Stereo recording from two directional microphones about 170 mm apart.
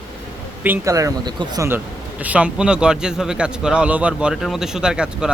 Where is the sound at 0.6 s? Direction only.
15° right (ahead or behind).